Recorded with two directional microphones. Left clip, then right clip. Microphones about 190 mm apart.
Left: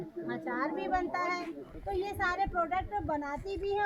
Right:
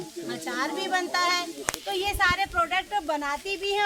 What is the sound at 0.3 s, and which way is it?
Speech, 5° left (ahead or behind).